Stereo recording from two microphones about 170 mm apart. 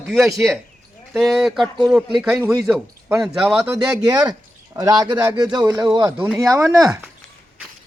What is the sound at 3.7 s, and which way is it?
Speech, 20° right (ahead or behind).